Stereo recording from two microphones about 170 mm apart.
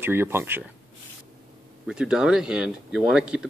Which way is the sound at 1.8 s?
5° right (ahead or behind).